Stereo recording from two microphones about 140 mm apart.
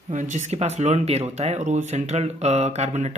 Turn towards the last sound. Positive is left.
turn(degrees=-55)  # may be behind; listen again after turning